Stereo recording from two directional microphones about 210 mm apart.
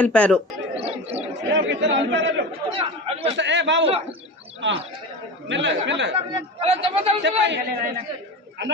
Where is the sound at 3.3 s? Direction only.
60° right (ahead or behind).